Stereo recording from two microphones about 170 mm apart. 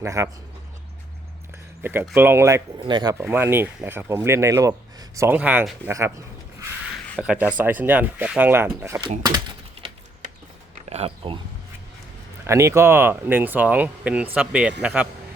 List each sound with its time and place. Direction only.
0.0 s speech: 20° right (ahead or behind)
1.8 s speech: 10° right (ahead or behind)
3.2 s speech: 10° right (ahead or behind)
10.8 s a sound: 40° right (ahead or behind)
12.5 s speech: 15° right (ahead or behind)